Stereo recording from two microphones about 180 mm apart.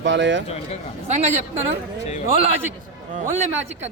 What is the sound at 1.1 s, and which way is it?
Speech, 40° right (ahead or behind).